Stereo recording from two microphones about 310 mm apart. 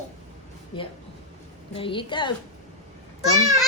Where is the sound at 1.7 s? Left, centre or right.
Centre.